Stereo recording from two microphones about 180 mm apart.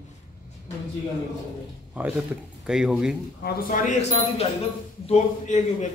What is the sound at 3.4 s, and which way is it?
Speech, 45° left (ahead or behind).